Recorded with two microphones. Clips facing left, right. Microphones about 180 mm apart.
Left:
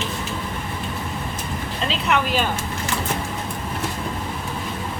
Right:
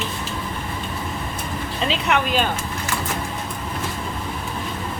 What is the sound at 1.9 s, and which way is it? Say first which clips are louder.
Speech: even; centre (ahead or behind).